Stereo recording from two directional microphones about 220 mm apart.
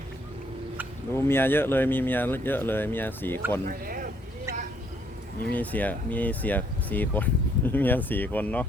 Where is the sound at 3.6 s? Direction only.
40° right (ahead or behind).